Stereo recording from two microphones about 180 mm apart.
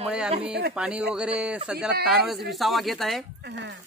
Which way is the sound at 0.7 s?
5° right (ahead or behind).